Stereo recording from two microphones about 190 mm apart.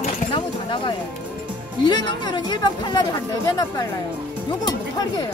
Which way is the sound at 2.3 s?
25° left (ahead or behind).